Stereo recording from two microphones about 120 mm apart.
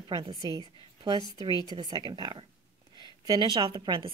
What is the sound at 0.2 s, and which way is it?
A woman's voice, 35° right (ahead or behind).